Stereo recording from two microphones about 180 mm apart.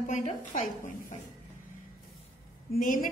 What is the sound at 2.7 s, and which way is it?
Speech, 50° left (ahead or behind).